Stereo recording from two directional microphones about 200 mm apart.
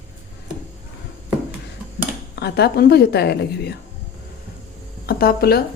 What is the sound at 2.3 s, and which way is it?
A woman's voice, 55° left (ahead or behind).